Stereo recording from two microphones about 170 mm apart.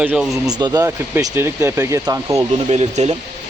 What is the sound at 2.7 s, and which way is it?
Speech, 40° right (ahead or behind).